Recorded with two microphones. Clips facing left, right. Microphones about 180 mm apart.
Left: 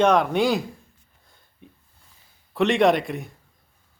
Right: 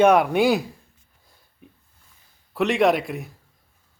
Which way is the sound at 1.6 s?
5° right (ahead or behind).